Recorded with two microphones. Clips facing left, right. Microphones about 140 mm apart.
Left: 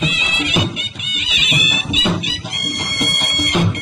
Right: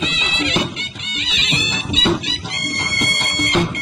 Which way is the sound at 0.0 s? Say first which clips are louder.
Left 1 dB; 25° right (ahead or behind).